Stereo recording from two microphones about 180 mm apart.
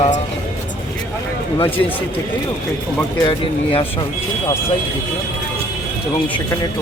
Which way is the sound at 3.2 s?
30° left (ahead or behind).